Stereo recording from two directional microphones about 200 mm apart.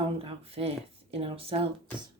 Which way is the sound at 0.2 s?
30° right (ahead or behind).